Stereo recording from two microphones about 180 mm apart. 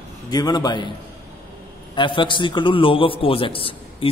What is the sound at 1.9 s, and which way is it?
A man's voice, 25° left (ahead or behind).